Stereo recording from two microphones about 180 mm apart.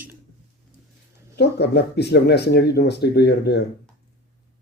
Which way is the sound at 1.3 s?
65° left (ahead or behind).